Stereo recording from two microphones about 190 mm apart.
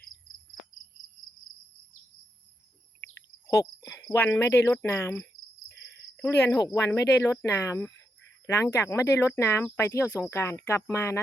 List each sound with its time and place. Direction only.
3.4 s cricket: 15° left (ahead or behind)
4.1 s speech: 15° left (ahead or behind)